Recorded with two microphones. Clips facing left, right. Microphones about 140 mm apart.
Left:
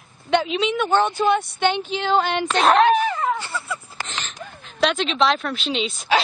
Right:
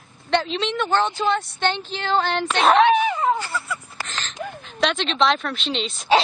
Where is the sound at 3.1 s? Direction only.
25° right (ahead or behind).